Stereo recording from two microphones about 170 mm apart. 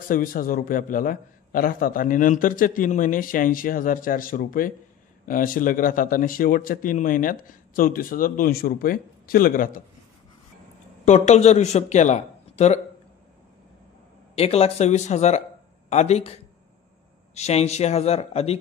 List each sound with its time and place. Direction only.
0.1 s a man's voice: 55° left (ahead or behind)
11.1 s speech: 45° left (ahead or behind)
14.3 s speech: 35° left (ahead or behind)